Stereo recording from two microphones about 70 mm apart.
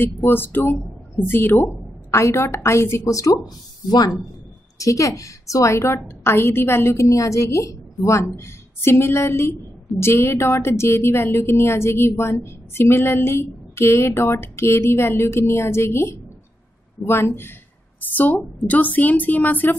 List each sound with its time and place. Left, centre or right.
0.2 s a woman's voice: left
4.7 s a woman's voice: left